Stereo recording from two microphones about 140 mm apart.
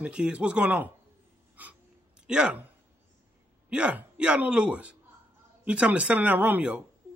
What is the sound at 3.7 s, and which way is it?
Speech, 10° right (ahead or behind).